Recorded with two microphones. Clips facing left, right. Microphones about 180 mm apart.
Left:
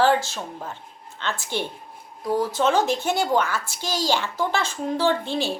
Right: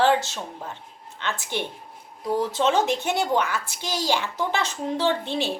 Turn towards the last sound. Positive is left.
turn(degrees=-20)  # may be behind; listen again after turning